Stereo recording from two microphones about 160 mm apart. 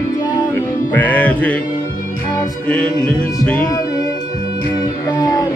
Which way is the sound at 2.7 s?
5° left (ahead or behind).